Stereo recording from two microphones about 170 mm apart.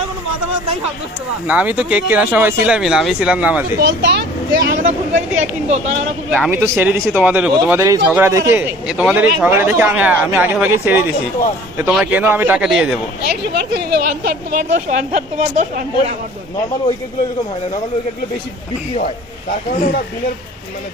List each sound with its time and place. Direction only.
1.5 s speech: 10° right (ahead or behind)
3.8 s speech: 80° right
4.6 s speech: 55° right (ahead or behind)
5.4 s speech: 40° right (ahead or behind)
6.5 s speech: 10° right (ahead or behind)
8.9 s speech: 5° right (ahead or behind)
13.9 s speech: 60° right (ahead or behind)